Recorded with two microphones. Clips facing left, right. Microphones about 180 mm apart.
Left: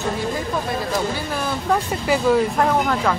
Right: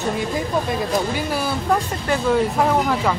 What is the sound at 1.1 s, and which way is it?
Speech, 10° right (ahead or behind).